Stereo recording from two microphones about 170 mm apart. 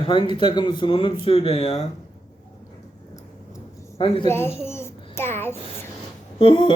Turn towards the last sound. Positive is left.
turn(degrees=30)  # may be behind; listen again after turning